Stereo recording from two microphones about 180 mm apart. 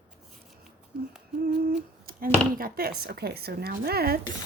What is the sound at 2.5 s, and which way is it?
Speech, 55° right (ahead or behind).